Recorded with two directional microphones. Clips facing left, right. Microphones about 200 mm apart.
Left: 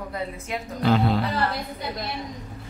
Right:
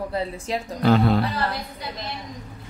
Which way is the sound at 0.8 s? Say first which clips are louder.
Right 3 dB; 50° right (ahead or behind).